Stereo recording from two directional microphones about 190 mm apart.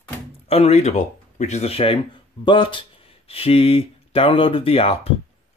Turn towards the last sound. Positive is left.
turn(degrees=30)  # may be behind; listen again after turning